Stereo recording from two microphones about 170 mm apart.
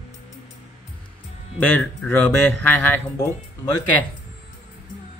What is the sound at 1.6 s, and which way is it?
Speech, 10° left (ahead or behind).